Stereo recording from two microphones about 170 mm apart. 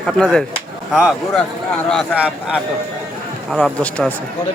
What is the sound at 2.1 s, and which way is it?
Speech, 5° right (ahead or behind).